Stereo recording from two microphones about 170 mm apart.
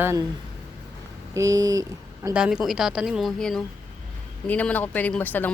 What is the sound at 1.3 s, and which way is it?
Speech, 20° right (ahead or behind).